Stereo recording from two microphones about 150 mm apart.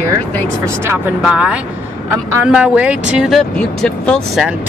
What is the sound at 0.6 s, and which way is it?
Speech, 15° right (ahead or behind).